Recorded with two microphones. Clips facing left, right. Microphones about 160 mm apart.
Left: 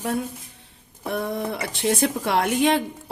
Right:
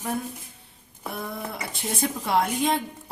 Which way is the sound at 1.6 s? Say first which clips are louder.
Left 6 dB; 90° left.